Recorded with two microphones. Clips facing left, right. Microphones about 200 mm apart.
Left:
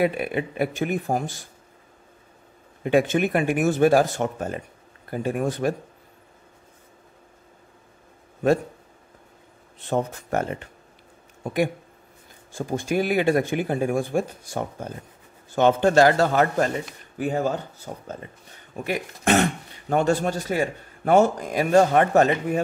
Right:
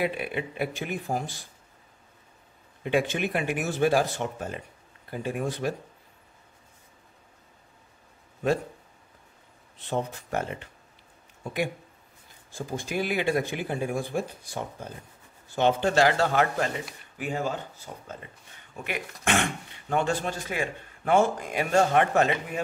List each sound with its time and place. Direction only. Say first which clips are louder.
0.0 s speech: left 6 dB; 45° left (ahead or behind)
2.8 s speech: left 6 dB; 45° left (ahead or behind)
9.8 s speech: left 5 dB; 45° left (ahead or behind)